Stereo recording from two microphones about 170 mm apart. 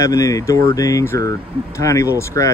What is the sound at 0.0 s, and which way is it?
Speech, 20° left (ahead or behind).